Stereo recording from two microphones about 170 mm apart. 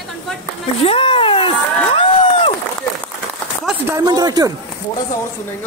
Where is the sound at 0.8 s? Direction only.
35° left (ahead or behind).